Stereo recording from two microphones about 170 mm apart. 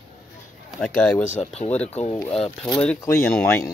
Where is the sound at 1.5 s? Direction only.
40° left (ahead or behind).